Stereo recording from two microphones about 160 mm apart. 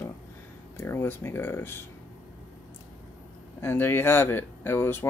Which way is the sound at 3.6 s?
15° left (ahead or behind).